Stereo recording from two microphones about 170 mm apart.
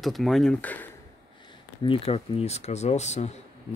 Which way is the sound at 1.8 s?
35° left (ahead or behind).